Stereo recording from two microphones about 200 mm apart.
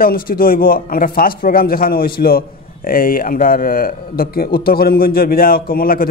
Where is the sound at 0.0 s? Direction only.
45° left (ahead or behind).